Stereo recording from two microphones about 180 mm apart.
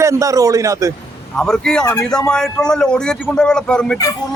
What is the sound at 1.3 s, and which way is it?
Speech, 5° left (ahead or behind).